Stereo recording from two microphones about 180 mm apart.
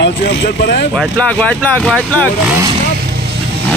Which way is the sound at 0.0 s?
70° left (ahead or behind).